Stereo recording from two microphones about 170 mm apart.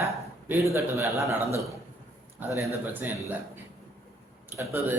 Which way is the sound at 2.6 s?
10° right (ahead or behind).